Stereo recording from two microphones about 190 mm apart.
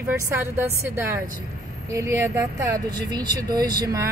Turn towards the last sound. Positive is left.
turn(degrees=-20)  # may be behind; listen again after turning